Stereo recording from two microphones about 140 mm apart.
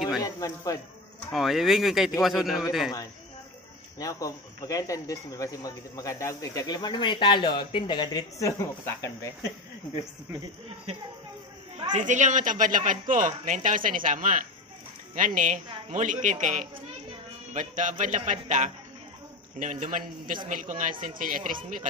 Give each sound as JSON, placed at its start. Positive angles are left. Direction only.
{"t": 0.2, "sound": "speech", "side_deg": 25}
{"t": 1.3, "sound": "speech", "side_deg": 0}
{"t": 4.0, "sound": "speech", "side_deg": 25}
{"t": 11.9, "sound": "a man's voice", "side_deg": -60}
{"t": 21.0, "sound": "a man's voice", "side_deg": -75}